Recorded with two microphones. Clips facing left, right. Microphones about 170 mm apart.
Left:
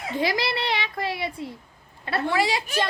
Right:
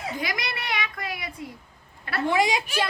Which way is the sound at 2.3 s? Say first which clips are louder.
Right 2 dB; 15° right (ahead or behind).